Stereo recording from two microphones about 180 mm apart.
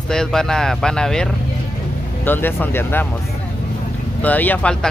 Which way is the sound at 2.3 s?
10° left (ahead or behind).